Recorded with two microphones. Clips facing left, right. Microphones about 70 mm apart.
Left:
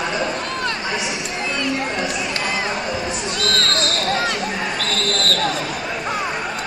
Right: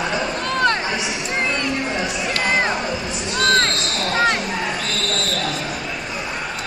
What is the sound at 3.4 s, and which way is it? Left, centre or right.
Basketball bounce, right.